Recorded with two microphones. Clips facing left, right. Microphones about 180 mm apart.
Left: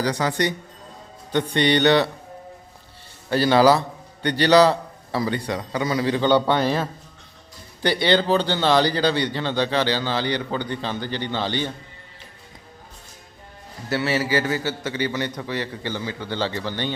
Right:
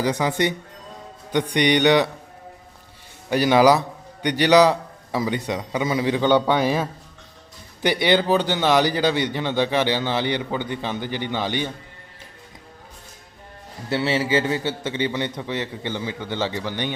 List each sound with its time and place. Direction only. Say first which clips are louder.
0.0 s a man's voice: right 1 dB; 20° right (ahead or behind)
3.2 s speech: even; 15° right (ahead or behind)
13.9 s a man's voice: right 1 dB; 25° right (ahead or behind)